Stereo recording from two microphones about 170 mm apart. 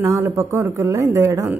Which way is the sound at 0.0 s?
15° right (ahead or behind).